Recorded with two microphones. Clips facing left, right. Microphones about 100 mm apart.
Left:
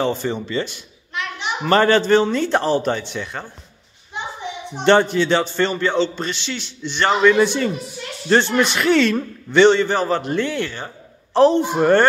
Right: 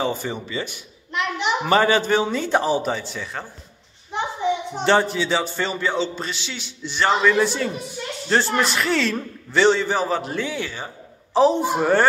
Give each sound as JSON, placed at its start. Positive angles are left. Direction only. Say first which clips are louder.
{"t": 0.0, "sound": "a man's voice", "louder": "left 4 dB", "side_deg": -5}
{"t": 4.8, "sound": "a man's voice", "louder": "left 4 dB", "side_deg": -5}